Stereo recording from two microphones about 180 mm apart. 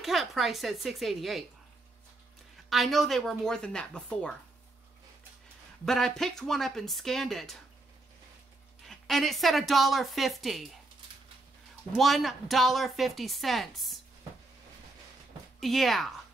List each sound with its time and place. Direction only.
0.0 s speech: centre (ahead or behind)
2.7 s speech: centre (ahead or behind)
5.9 s speech: centre (ahead or behind)
8.8 s speech: centre (ahead or behind)
12.0 s speech: centre (ahead or behind)
15.6 s speech: centre (ahead or behind)